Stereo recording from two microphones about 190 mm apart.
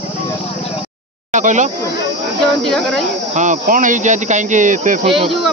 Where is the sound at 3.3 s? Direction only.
45° right (ahead or behind).